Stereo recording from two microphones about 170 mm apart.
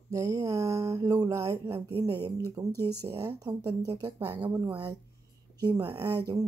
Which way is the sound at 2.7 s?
15° left (ahead or behind).